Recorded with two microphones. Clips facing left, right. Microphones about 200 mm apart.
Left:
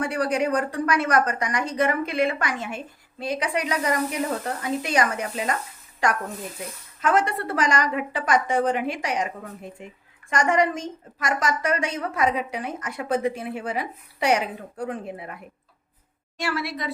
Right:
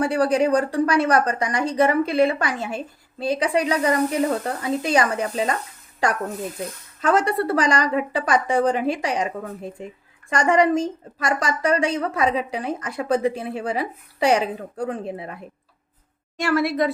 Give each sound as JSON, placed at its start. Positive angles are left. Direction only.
{"t": 0.0, "sound": "a woman's voice", "side_deg": -30}
{"t": 16.4, "sound": "a woman's voice", "side_deg": -50}